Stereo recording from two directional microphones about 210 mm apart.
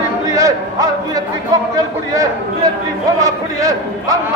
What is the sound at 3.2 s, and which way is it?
Speech, 15° right (ahead or behind).